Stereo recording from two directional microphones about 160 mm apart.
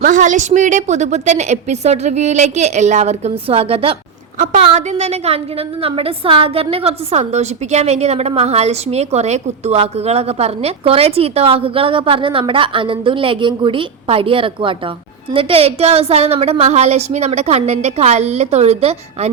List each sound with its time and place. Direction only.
0.0 s a woman's voice: 55° right (ahead or behind)